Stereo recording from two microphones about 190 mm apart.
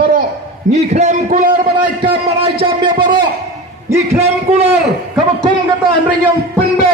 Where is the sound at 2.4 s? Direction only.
30° right (ahead or behind).